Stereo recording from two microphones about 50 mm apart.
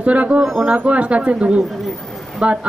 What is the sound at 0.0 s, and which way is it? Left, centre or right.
Speech, right.